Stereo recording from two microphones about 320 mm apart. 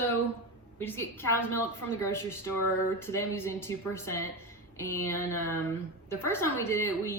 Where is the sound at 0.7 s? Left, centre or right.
Centre.